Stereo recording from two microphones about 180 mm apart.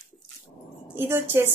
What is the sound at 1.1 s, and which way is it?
Speech, 15° right (ahead or behind).